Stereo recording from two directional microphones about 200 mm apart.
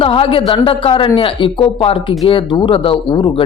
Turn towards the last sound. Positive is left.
turn(degrees=25)  # may be behind; listen again after turning